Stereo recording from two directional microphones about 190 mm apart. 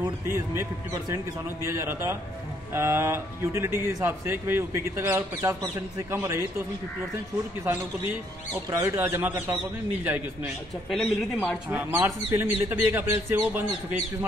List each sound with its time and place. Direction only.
0.0 s speech: 15° right (ahead or behind)
7.6 s speech: 10° right (ahead or behind)
10.9 s speech: centre (ahead or behind)
11.7 s speech: 10° right (ahead or behind)